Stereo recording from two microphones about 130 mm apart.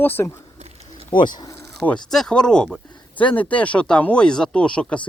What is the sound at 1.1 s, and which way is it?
Speech, 35° left (ahead or behind).